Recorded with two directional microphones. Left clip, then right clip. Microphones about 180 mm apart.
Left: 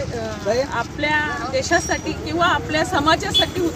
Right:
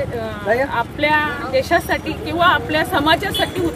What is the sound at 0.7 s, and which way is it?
Speech, 5° right (ahead or behind).